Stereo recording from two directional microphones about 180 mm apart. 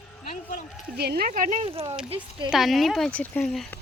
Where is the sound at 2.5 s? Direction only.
Centre (ahead or behind).